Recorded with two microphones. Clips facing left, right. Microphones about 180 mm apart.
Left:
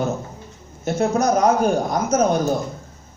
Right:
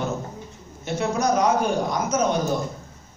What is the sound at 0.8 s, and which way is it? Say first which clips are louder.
A man's voice: left 4 dB; 45° left (ahead or behind).